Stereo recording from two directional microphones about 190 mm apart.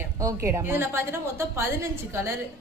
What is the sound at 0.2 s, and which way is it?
A woman's voice, 15° right (ahead or behind).